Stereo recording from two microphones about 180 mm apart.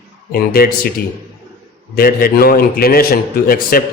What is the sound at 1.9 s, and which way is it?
A man's voice, 55° left (ahead or behind).